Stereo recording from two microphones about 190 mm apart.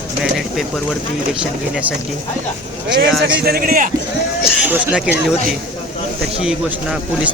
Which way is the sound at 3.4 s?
50° right (ahead or behind).